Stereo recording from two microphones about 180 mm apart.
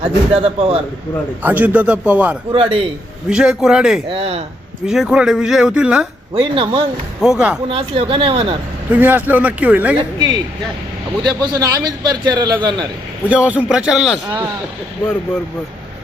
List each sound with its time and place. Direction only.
0.3 s speech: 30° right (ahead or behind)
1.4 s speech: 10° right (ahead or behind)
2.5 s speech: 30° right (ahead or behind)
3.2 s speech: 5° right (ahead or behind)
4.1 s speech: 35° right (ahead or behind)
4.9 s speech: 5° right (ahead or behind)
6.3 s speech: 30° right (ahead or behind)
7.2 s speech: 5° right (ahead or behind)
7.7 s speech: 35° right (ahead or behind)
8.9 s speech: 10° right (ahead or behind)
10.2 s a man's voice: 20° right (ahead or behind)
13.2 s speech: 5° right (ahead or behind)